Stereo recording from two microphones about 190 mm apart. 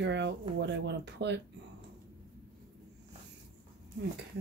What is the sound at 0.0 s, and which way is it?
Speech, 65° right (ahead or behind).